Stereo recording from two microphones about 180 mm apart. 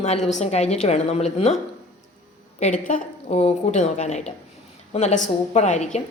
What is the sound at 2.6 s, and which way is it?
Speech, 45° left (ahead or behind).